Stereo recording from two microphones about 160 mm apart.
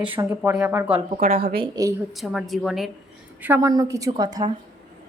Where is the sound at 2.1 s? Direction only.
Centre (ahead or behind).